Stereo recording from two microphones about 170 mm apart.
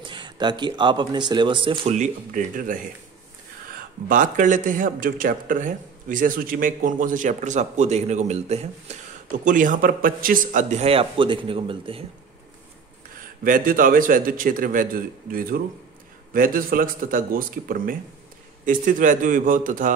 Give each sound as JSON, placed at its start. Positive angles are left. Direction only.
{"t": 0.0, "sound": "a man's voice", "side_deg": -25}
{"t": 2.0, "sound": "speech", "side_deg": -50}
{"t": 4.1, "sound": "speech", "side_deg": -50}
{"t": 9.4, "sound": "speech", "side_deg": -50}
{"t": 13.1, "sound": "speech", "side_deg": -55}